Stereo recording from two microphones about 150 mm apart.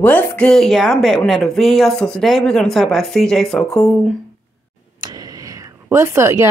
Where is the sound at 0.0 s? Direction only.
10° left (ahead or behind).